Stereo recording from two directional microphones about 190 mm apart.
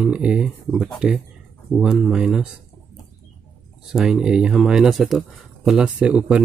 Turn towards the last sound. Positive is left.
turn(degrees=-5)  # may be behind; listen again after turning